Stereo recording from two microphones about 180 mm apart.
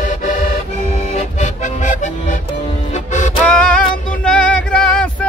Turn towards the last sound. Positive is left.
turn(degrees=5)  # may be behind; listen again after turning